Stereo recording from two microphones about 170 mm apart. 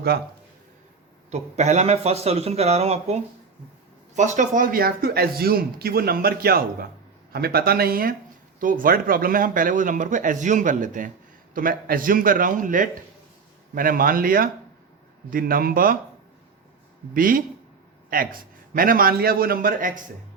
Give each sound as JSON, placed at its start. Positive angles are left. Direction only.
{"t": 1.3, "sound": "speech", "side_deg": -40}
{"t": 17.2, "sound": "speech", "side_deg": -55}